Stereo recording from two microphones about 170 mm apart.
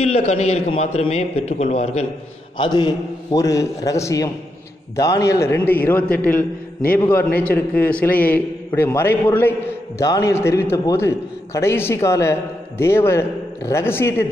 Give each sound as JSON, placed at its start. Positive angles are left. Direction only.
{"t": 0.0, "sound": "a man's voice", "side_deg": 40}
{"t": 2.5, "sound": "a man's voice", "side_deg": 25}